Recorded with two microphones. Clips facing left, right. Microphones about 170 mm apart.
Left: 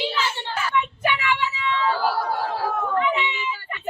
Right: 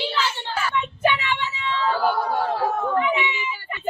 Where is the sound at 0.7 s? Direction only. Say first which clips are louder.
Right 2 dB; 25° right (ahead or behind).